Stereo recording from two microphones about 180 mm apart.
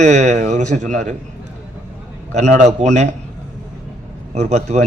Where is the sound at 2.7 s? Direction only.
40° right (ahead or behind).